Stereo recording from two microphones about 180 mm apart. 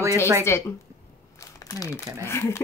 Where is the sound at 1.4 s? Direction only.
20° left (ahead or behind).